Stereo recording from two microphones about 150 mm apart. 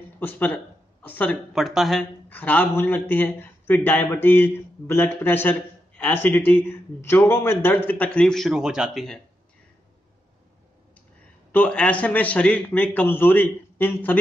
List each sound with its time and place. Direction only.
0.2 s a man's voice: 10° left (ahead or behind)
1.5 s speech: centre (ahead or behind)
2.2 s a man's voice: 10° left (ahead or behind)
11.5 s a man's voice: 10° left (ahead or behind)